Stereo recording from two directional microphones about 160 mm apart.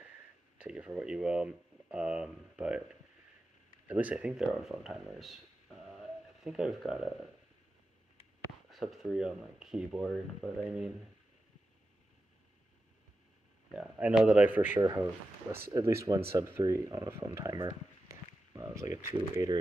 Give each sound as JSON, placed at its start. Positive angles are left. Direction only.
{"t": 0.6, "sound": "speech", "side_deg": -5}
{"t": 3.8, "sound": "speech", "side_deg": -10}
{"t": 8.6, "sound": "speech", "side_deg": 0}
{"t": 13.7, "sound": "speech", "side_deg": -5}
{"t": 14.8, "sound": "speech", "side_deg": -20}